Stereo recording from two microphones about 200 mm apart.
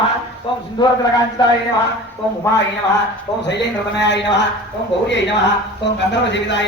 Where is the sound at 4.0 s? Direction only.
60° left (ahead or behind).